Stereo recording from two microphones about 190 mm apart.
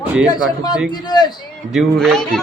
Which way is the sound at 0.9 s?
20° left (ahead or behind).